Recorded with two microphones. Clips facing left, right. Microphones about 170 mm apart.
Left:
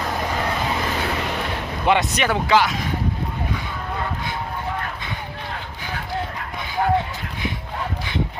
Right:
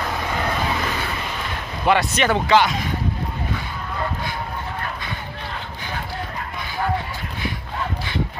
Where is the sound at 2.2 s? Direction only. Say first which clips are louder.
Right 1 dB; 10° left (ahead or behind).